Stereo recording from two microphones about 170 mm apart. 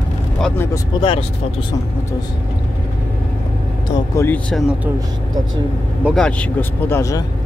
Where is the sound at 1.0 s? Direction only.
30° left (ahead or behind).